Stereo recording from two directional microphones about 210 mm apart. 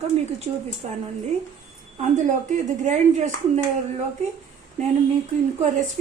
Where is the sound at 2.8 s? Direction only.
35° right (ahead or behind).